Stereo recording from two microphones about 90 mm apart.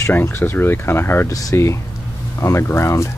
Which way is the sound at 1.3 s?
35° left (ahead or behind).